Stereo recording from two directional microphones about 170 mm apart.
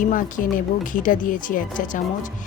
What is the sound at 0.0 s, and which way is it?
A woman's voice, 50° left (ahead or behind).